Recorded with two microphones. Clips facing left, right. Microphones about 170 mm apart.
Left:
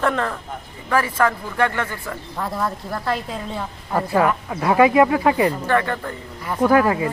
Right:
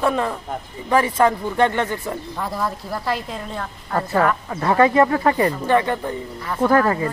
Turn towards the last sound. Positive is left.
turn(degrees=10)  # may be behind; listen again after turning